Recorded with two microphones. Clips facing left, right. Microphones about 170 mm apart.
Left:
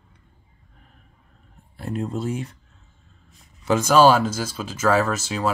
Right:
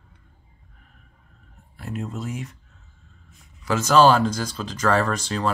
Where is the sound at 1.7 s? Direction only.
30° left (ahead or behind).